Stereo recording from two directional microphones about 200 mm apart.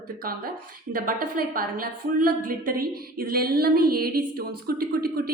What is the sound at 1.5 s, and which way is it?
Speech, 45° right (ahead or behind).